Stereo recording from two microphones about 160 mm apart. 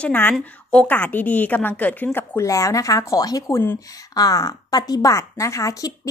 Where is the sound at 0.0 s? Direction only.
10° left (ahead or behind).